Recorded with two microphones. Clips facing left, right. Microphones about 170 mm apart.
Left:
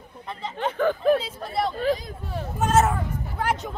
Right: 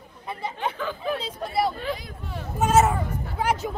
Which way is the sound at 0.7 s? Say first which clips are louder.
Left 8 dB; 50° left (ahead or behind).